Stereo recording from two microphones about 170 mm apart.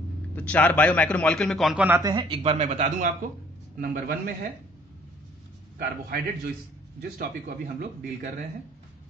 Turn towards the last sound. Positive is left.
turn(degrees=-65)  # may be behind; listen again after turning